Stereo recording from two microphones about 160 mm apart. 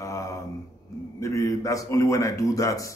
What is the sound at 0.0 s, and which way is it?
Mantra, 20° left (ahead or behind).